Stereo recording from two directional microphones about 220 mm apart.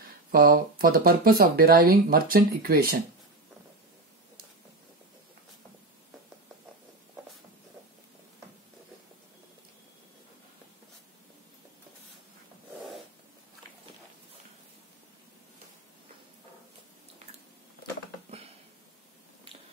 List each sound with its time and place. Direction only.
0.3 s speech: 40° right (ahead or behind)